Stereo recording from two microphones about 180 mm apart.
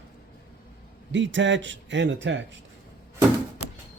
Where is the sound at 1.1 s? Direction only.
90° right.